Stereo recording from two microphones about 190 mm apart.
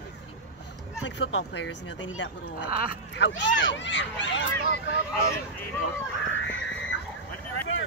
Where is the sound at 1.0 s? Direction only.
70° left (ahead or behind).